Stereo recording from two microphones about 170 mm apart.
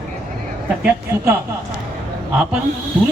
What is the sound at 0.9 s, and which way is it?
A man's voice, 10° right (ahead or behind).